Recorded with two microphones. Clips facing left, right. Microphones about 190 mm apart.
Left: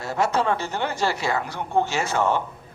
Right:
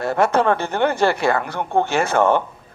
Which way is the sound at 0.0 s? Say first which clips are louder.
Right 6 dB; 55° right (ahead or behind).